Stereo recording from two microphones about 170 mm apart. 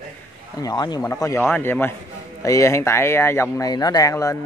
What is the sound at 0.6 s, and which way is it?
Speech, 25° left (ahead or behind).